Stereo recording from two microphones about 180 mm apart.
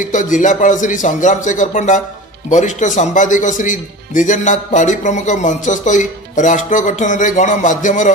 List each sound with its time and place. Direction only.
0.0 s a man's voice: 45° left (ahead or behind)